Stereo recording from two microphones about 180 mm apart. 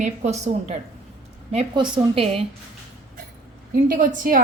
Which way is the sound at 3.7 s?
50° right (ahead or behind).